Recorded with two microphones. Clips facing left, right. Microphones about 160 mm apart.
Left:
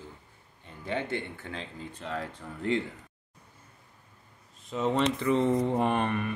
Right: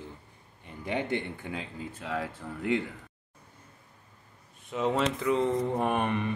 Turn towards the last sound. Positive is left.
turn(degrees=-20)  # may be behind; listen again after turning